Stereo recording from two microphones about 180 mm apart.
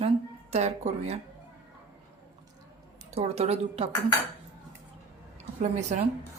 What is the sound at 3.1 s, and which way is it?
Speech, 35° right (ahead or behind).